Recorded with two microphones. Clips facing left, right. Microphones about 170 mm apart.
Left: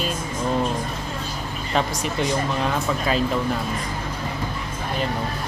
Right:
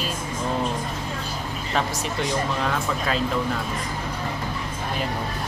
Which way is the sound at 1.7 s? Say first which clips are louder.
Left 3 dB; centre (ahead or behind).